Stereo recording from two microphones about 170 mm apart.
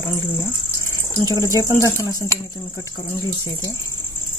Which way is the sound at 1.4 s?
20° left (ahead or behind).